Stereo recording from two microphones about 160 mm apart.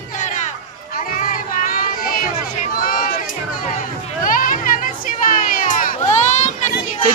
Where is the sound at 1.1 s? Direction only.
60° left (ahead or behind).